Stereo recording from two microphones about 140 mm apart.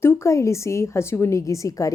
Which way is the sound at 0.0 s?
20° left (ahead or behind).